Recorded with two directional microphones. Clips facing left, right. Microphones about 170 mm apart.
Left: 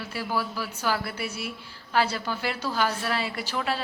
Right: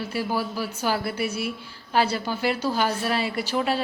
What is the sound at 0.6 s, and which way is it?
Speech, 20° right (ahead or behind).